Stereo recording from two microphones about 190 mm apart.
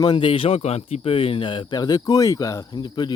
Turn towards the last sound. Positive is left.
turn(degrees=25)  # may be behind; listen again after turning